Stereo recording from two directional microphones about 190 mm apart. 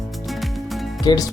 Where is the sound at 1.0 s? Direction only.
20° left (ahead or behind).